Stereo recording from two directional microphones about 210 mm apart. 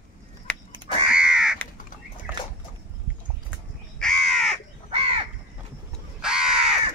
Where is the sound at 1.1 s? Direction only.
5° right (ahead or behind).